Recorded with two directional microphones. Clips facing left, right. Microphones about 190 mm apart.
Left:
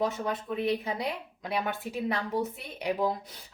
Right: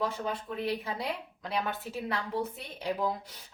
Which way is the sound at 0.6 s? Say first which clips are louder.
Left 4 dB; 20° left (ahead or behind).